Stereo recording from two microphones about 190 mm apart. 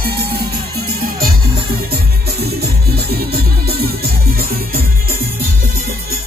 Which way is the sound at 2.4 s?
55° right (ahead or behind).